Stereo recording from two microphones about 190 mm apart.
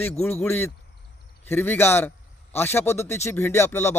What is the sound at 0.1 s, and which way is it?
A man's voice, 5° left (ahead or behind).